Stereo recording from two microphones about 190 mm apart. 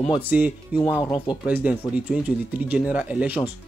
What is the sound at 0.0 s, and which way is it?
Speech, 5° right (ahead or behind).